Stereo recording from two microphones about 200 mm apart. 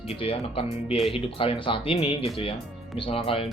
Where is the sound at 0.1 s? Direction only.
30° left (ahead or behind).